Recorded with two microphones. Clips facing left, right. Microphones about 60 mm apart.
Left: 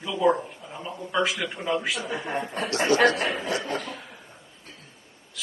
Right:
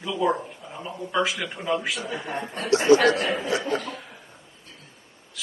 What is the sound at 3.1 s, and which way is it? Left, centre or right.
Speech, centre.